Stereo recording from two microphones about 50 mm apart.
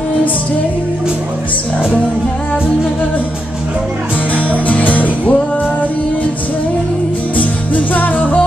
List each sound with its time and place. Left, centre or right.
4.4 s music: left
7.3 s music: left